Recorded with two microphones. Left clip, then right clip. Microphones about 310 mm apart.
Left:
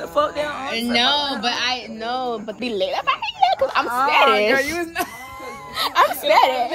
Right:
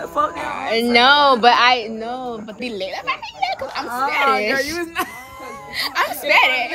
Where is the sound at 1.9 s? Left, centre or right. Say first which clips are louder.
Left 2 dB; left.